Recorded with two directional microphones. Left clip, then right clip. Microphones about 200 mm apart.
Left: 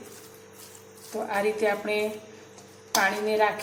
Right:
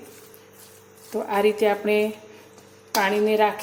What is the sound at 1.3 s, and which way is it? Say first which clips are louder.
Speech: right 5 dB; 40° right (ahead or behind).